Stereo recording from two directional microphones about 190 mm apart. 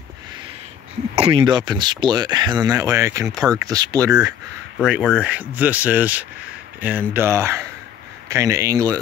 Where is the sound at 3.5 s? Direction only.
20° right (ahead or behind).